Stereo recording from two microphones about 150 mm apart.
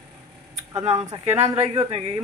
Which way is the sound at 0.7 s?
45° right (ahead or behind).